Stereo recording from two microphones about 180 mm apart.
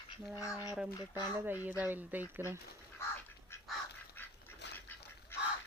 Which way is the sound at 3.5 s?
15° left (ahead or behind).